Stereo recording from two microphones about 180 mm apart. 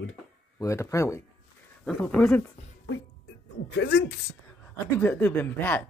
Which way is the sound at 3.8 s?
65° left (ahead or behind).